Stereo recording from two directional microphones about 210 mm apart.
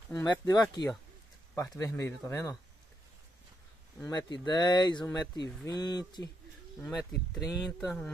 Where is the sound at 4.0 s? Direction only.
20° left (ahead or behind).